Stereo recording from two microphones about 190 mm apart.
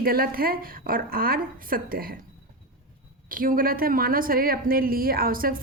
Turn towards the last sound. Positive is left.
turn(degrees=-50)  # may be behind; listen again after turning